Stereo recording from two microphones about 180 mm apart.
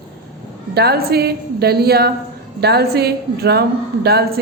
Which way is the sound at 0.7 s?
60° right (ahead or behind).